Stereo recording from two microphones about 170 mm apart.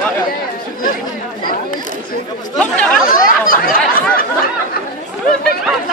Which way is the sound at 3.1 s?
55° left (ahead or behind).